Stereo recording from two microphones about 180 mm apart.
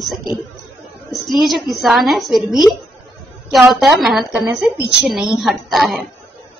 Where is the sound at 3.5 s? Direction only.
Centre (ahead or behind).